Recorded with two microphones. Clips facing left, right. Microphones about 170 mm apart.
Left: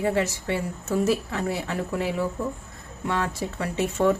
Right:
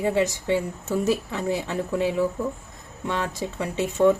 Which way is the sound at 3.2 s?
15° right (ahead or behind).